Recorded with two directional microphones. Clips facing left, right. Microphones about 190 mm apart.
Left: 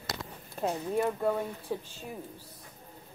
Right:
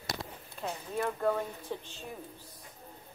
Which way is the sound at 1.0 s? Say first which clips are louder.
Even; 10° left (ahead or behind).